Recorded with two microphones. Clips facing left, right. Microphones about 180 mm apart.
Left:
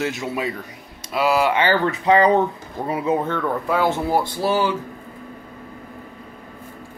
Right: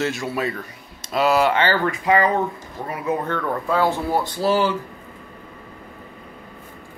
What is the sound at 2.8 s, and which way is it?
Speech, 30° left (ahead or behind).